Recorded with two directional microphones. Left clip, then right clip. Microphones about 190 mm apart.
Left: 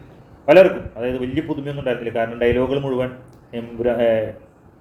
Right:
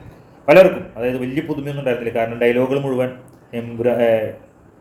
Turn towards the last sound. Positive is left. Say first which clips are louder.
# right 2 dB
turn(degrees=-20)  # may be behind; listen again after turning